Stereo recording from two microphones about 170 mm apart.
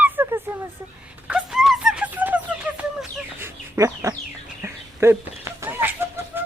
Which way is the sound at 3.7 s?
15° right (ahead or behind).